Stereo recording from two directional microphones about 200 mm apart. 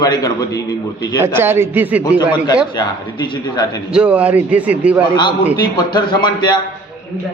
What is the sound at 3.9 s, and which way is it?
A man's voice, 5° right (ahead or behind).